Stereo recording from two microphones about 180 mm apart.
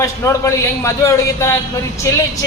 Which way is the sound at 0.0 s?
15° left (ahead or behind).